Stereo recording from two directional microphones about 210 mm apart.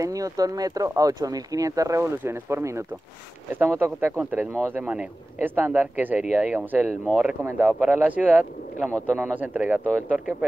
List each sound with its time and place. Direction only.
0.0 s speech: 15° right (ahead or behind)